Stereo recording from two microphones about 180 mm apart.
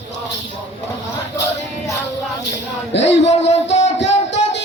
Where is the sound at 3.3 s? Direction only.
40° left (ahead or behind).